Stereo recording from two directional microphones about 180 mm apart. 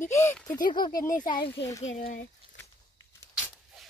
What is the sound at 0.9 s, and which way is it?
Speech, 50° left (ahead or behind).